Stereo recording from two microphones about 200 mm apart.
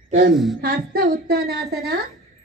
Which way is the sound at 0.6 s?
50° right (ahead or behind).